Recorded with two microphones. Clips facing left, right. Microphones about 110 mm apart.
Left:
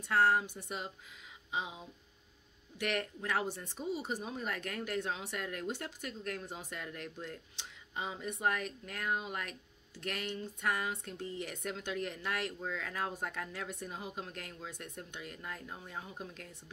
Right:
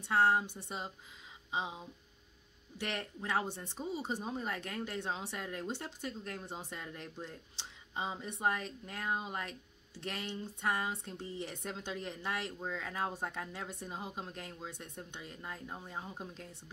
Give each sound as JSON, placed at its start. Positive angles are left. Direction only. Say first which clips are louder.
{"t": 0.0, "sound": "speech", "louder": "even", "side_deg": -25}
{"t": 2.8, "sound": "speech", "louder": "left 4 dB", "side_deg": -25}